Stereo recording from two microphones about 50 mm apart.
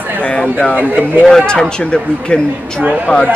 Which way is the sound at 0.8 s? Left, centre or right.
Right.